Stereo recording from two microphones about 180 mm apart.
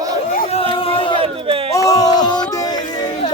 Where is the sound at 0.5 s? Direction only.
30° left (ahead or behind).